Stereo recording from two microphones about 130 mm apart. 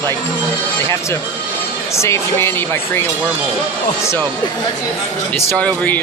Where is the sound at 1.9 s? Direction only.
20° left (ahead or behind).